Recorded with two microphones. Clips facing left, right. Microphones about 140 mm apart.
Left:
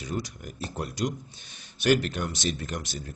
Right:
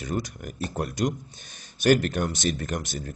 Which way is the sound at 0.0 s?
55° right (ahead or behind).